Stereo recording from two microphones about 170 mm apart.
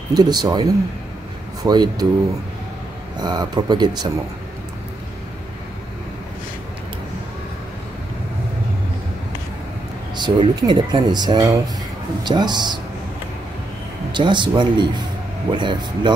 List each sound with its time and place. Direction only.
0.1 s speech: 25° right (ahead or behind)
3.2 s speech: 25° right (ahead or behind)
10.1 s speech: 25° right (ahead or behind)
14.1 s speech: 25° right (ahead or behind)